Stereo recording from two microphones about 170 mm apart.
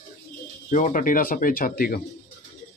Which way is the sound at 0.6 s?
50° left (ahead or behind).